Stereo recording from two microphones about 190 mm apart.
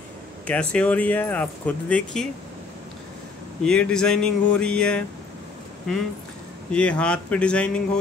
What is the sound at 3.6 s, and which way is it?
Speech, 5° left (ahead or behind).